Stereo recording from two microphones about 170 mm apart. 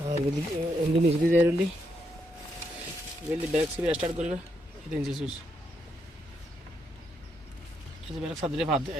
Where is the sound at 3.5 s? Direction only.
5° right (ahead or behind).